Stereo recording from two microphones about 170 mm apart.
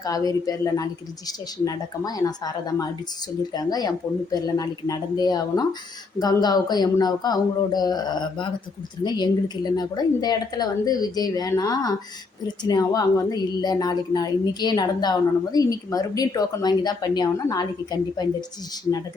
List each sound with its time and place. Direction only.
0.0 s a woman's voice: 20° left (ahead or behind)